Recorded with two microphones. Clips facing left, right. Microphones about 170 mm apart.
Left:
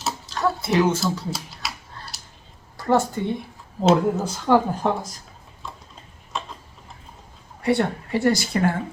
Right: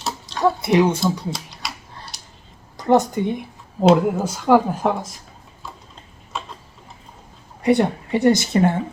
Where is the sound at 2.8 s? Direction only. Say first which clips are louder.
Right 4 dB; 15° right (ahead or behind).